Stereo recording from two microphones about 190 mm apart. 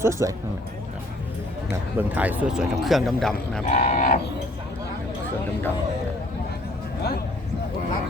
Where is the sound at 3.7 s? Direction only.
40° left (ahead or behind).